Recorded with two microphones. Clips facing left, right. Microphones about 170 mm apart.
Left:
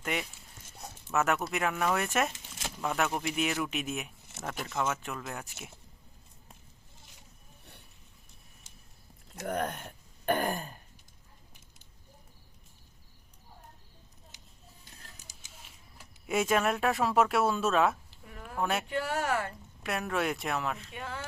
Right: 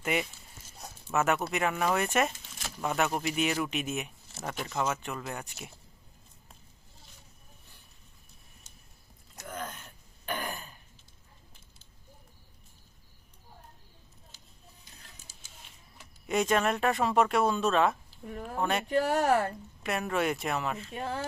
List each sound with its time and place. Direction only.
0.0 s speech: 5° right (ahead or behind)
9.4 s throat clearing: 65° left (ahead or behind); by 10.8 s 45° left (ahead or behind)
16.2 s speech: 5° left (ahead or behind)
18.3 s speech: 35° right (ahead or behind)
18.6 s speech: 5° left (ahead or behind)
18.9 s speech: 40° right (ahead or behind)
19.8 s speech: centre (ahead or behind)
20.9 s speech: 35° right (ahead or behind)